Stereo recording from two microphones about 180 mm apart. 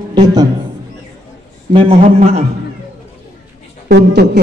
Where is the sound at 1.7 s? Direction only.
30° right (ahead or behind).